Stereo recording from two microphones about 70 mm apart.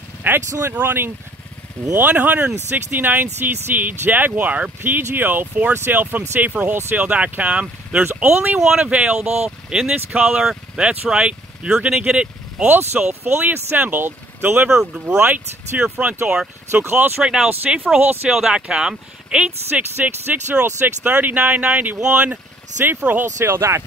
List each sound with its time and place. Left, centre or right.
0.5 s speech: right; by 8.5 s centre
8.5 s speech: centre
12.6 s speech: right
14.7 s speech: centre; by 17.2 s right
17.2 s speech: centre
18.0 s speech: right
18.3 s speech: centre
19.7 s speech: right
22.8 s speech: right